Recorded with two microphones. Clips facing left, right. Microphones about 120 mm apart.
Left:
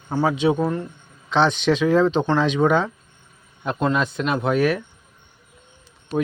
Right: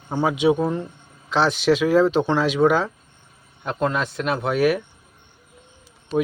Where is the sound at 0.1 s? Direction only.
15° right (ahead or behind).